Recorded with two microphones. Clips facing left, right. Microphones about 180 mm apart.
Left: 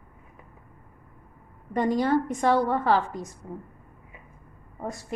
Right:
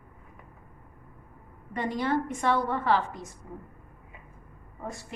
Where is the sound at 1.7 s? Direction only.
40° left (ahead or behind).